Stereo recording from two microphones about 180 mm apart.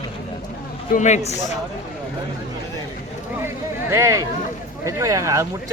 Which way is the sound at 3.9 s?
15° right (ahead or behind).